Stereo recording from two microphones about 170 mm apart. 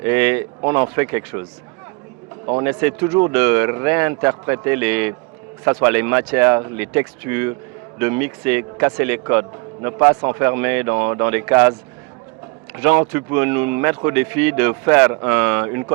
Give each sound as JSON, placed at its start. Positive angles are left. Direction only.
{"t": 0.0, "sound": "speech", "side_deg": -10}
{"t": 2.6, "sound": "speech", "side_deg": -15}
{"t": 12.7, "sound": "speech", "side_deg": -15}